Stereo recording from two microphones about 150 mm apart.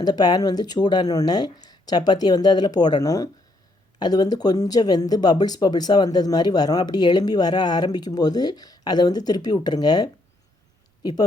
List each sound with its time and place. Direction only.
0.0 s speech: 25° left (ahead or behind)